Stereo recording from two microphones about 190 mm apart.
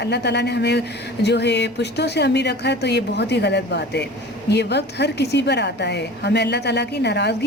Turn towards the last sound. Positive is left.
turn(degrees=60)  # may be behind; listen again after turning